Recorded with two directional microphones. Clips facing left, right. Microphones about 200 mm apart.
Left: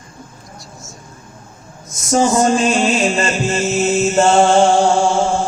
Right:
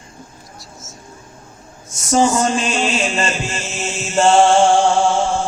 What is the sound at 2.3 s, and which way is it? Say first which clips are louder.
Music: left 4 dB; 40° left (ahead or behind).